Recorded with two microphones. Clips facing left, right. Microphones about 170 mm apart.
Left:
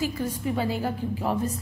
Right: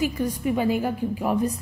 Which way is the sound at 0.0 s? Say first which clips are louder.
Right 3 dB; 15° right (ahead or behind).